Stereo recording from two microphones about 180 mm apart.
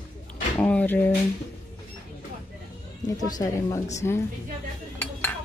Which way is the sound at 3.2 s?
20° left (ahead or behind).